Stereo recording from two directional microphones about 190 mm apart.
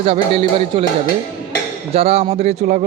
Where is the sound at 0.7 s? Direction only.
30° right (ahead or behind).